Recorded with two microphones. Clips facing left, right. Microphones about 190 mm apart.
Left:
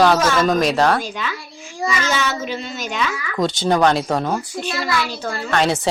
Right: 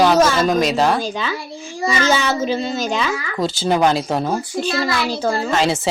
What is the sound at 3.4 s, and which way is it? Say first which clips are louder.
Speech: left 1 dB; 5° right (ahead or behind).